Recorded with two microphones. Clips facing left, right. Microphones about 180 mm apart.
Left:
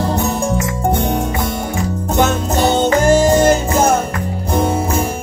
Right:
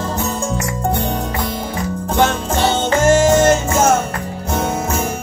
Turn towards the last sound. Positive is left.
turn(degrees=35)  # may be behind; listen again after turning